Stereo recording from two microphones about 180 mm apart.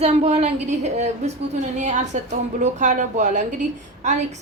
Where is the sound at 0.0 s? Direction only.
35° right (ahead or behind).